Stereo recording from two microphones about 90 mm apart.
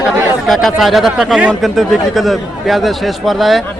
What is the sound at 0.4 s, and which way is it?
A man's voice, centre (ahead or behind).